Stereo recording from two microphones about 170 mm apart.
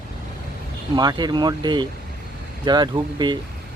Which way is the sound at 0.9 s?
25° right (ahead or behind).